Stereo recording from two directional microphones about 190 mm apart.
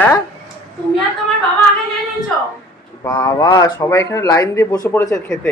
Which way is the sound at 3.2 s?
20° left (ahead or behind).